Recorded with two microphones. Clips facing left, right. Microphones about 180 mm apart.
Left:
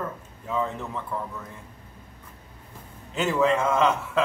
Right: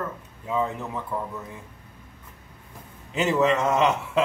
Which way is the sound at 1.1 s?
15° right (ahead or behind).